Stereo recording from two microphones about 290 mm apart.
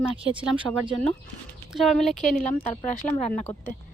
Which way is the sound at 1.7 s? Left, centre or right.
Centre.